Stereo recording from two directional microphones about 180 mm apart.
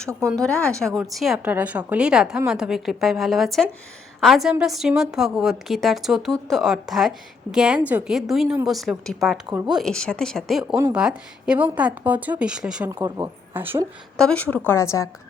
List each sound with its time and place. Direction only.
0.1 s a woman's voice: 15° right (ahead or behind)
0.4 s a woman's voice: 5° left (ahead or behind)
12.9 s a woman's voice: 15° right (ahead or behind)
14.2 s speech: 5° left (ahead or behind)